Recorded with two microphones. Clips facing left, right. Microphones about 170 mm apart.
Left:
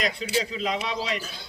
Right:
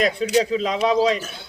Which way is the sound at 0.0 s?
45° right (ahead or behind).